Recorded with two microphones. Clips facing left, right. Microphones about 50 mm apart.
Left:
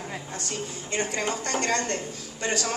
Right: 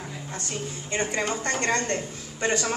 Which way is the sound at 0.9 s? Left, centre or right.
Right.